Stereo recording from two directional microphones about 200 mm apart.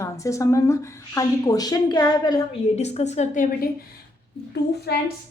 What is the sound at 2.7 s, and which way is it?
Speech, 35° left (ahead or behind).